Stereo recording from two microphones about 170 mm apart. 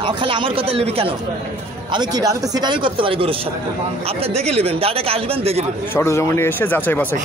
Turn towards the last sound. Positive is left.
turn(degrees=10)  # may be behind; listen again after turning